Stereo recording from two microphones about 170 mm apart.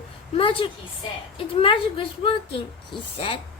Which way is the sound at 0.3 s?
30° left (ahead or behind).